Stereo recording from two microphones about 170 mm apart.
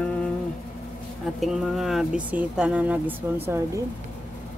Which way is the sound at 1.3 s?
Centre (ahead or behind).